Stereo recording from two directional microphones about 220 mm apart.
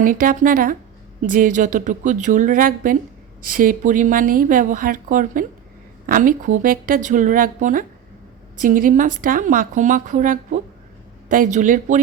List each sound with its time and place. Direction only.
0.0 s speech: 40° right (ahead or behind)